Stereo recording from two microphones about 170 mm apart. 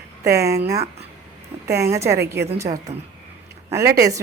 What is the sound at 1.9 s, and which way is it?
A woman's voice, 15° right (ahead or behind).